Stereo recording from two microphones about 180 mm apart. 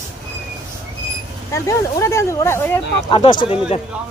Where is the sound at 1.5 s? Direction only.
15° left (ahead or behind).